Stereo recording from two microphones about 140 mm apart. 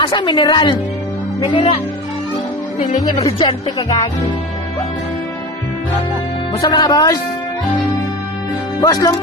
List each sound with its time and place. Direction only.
0.0 s a child's voice: 35° left (ahead or behind)
3.3 s speech: 30° left (ahead or behind)
6.6 s speech: 30° left (ahead or behind)
8.8 s speech: 25° left (ahead or behind)